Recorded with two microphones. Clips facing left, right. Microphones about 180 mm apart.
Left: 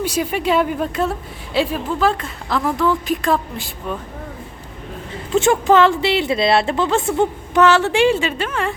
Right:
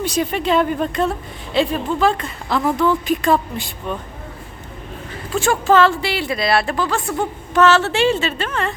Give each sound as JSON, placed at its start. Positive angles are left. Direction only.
{"t": 0.0, "sound": "a woman's voice", "side_deg": 10}
{"t": 5.3, "sound": "a woman's voice", "side_deg": 20}